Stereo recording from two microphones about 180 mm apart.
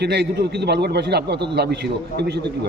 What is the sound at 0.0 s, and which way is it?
A man's voice, 65° right (ahead or behind).